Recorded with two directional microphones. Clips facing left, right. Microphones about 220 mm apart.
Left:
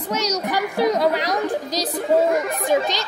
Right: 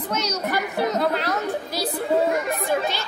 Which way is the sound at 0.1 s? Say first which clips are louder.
Left 3 dB; 10° left (ahead or behind).